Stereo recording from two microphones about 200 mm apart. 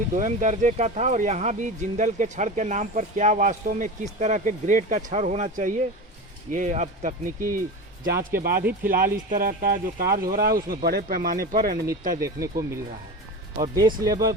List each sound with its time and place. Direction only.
0.1 s speech: 40° right (ahead or behind)
12.2 s speech: 15° right (ahead or behind)
14.0 s speech: 15° right (ahead or behind)